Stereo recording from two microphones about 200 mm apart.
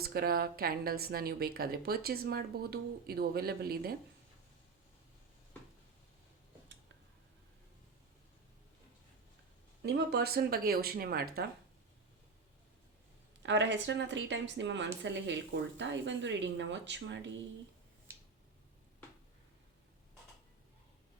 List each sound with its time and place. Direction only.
0.0 s speech: 50° right (ahead or behind)
9.8 s speech: 55° right (ahead or behind)
13.4 s speech: 65° right (ahead or behind)